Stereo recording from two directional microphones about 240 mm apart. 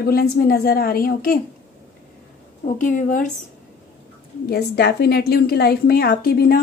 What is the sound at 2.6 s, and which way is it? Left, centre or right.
Speech, left.